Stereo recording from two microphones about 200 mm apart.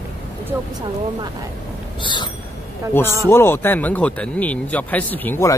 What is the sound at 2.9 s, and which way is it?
Speech, 10° left (ahead or behind).